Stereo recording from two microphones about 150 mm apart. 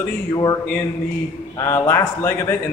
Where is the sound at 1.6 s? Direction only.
20° left (ahead or behind).